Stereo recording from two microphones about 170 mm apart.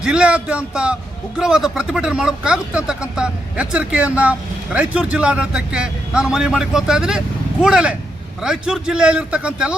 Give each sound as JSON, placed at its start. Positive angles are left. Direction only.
{"t": 0.0, "sound": "a man's voice", "side_deg": -5}